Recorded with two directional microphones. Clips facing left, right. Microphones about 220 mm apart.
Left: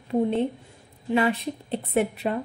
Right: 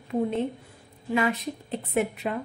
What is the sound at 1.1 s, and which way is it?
Speech, 30° left (ahead or behind).